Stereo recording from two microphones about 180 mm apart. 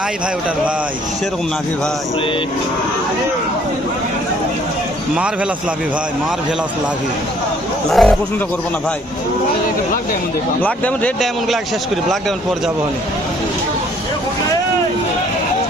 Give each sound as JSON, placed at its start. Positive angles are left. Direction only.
{"t": 7.9, "sound": "speech", "side_deg": 0}
{"t": 10.6, "sound": "speech", "side_deg": 5}